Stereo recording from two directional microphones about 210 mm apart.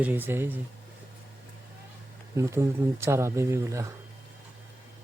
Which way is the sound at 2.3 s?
15° right (ahead or behind).